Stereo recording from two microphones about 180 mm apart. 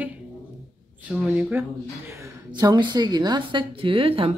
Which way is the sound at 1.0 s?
10° right (ahead or behind).